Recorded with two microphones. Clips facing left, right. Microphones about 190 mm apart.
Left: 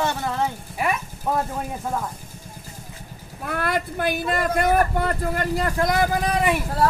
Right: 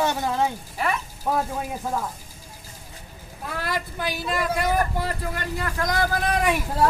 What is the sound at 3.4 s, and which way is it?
Speech, 60° left (ahead or behind).